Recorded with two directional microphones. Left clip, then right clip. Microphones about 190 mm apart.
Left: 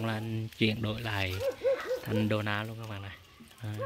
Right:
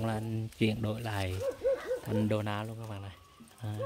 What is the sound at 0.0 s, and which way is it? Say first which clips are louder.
Speech: even; 5° right (ahead or behind).